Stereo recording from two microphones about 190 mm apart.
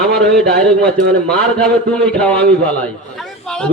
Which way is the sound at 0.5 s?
55° right (ahead or behind).